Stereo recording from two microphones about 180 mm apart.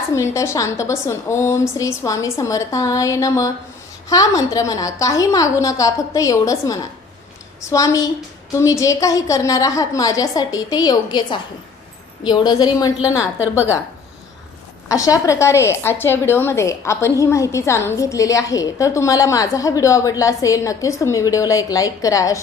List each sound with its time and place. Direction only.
0.1 s a woman's voice: 15° left (ahead or behind)
14.8 s a woman's voice: 20° left (ahead or behind)